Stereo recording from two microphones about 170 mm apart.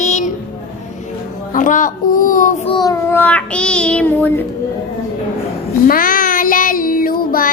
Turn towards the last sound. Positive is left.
turn(degrees=55)  # may be behind; listen again after turning